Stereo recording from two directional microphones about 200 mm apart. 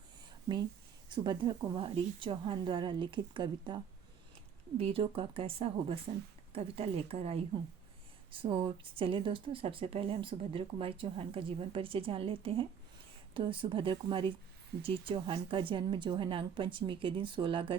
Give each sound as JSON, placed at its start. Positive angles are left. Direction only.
{"t": 1.1, "sound": "speech", "side_deg": -25}
{"t": 4.8, "sound": "speech", "side_deg": -30}